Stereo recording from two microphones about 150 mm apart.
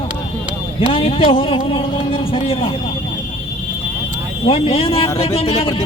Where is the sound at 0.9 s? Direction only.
35° left (ahead or behind).